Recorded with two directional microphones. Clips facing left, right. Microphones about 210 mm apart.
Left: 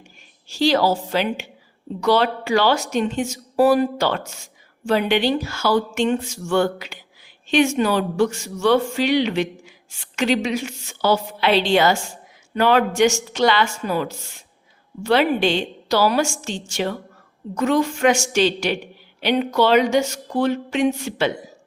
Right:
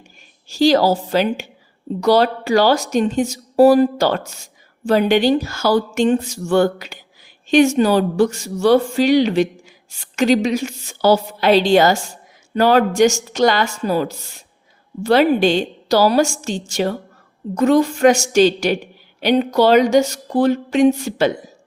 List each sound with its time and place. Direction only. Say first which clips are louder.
0.4 s speech: right 4 dB; 40° right (ahead or behind)